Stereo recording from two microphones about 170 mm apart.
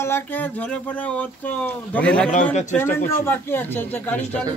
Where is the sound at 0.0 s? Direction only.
10° left (ahead or behind).